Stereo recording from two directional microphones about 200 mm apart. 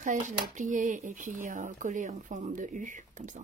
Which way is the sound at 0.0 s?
40° right (ahead or behind).